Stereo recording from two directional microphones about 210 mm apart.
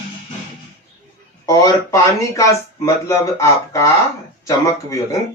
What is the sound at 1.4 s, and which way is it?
Speech, 15° left (ahead or behind).